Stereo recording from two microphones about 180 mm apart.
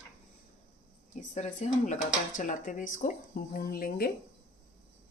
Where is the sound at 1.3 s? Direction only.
40° left (ahead or behind); by 4.1 s 55° left (ahead or behind).